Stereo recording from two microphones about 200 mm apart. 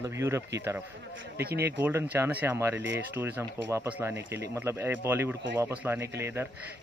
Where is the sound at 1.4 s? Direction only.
50° right (ahead or behind).